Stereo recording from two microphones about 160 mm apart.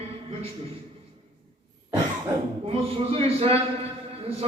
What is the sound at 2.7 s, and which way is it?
Speech, 35° right (ahead or behind).